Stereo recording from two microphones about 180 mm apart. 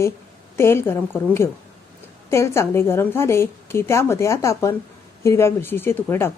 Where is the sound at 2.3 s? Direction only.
15° left (ahead or behind).